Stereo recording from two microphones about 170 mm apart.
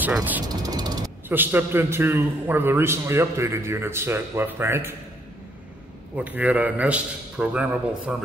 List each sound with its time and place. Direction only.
0.0 s a man's voice: 10° right (ahead or behind)
0.5 s mechanisms: 20° right (ahead or behind)
1.3 s a man's voice: 10° right (ahead or behind)
6.1 s a man's voice: 10° right (ahead or behind)